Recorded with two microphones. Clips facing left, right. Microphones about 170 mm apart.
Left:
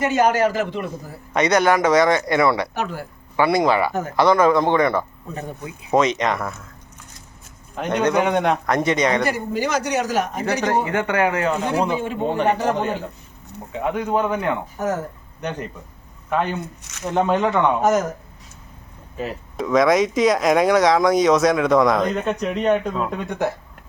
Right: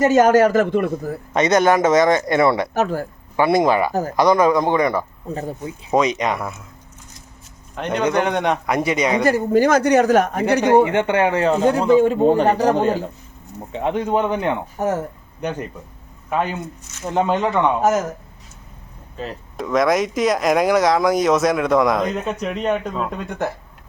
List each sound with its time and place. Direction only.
0.0 s speech: 45° right (ahead or behind)
1.3 s a man's voice: 20° right (ahead or behind)
2.7 s speech: 45° right (ahead or behind)
3.3 s a man's voice: 20° right (ahead or behind)
5.3 s a man's voice: 30° right (ahead or behind)
5.9 s speech: 15° right (ahead or behind)
7.8 s speech: 5° left (ahead or behind)
8.7 s speech: 10° right (ahead or behind)
9.2 s speech: 45° right (ahead or behind)
10.8 s a man's voice: 25° right (ahead or behind)
11.7 s speech: 15° left (ahead or behind)
11.9 s a man's voice: 40° right (ahead or behind)
16.3 s speech: 5° right (ahead or behind)
19.1 s speech: 5° left (ahead or behind)